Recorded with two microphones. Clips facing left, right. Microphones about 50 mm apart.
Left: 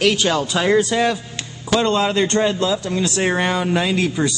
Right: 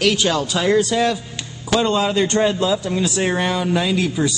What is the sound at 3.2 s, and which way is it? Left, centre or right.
Speech, centre.